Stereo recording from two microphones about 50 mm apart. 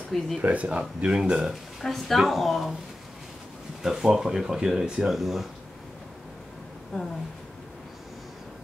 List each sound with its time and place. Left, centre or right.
0.4 s speech: right
1.4 s speech: centre
3.8 s speech: centre
6.9 s speech: centre